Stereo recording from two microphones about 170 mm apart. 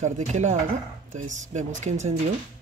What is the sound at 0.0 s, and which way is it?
Speech, 45° right (ahead or behind).